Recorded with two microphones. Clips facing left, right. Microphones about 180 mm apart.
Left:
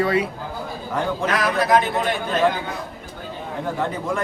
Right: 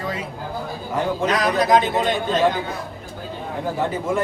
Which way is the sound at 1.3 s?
20° right (ahead or behind).